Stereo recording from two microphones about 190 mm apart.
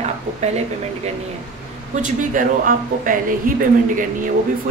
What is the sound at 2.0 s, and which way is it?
Speech, 45° right (ahead or behind).